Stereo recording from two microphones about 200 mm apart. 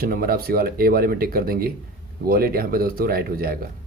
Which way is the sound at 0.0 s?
50° right (ahead or behind).